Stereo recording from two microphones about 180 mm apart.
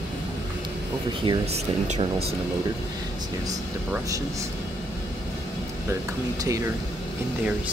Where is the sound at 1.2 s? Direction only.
30° right (ahead or behind).